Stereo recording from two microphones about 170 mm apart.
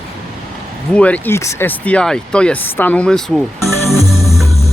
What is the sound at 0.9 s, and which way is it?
Speech, 10° left (ahead or behind).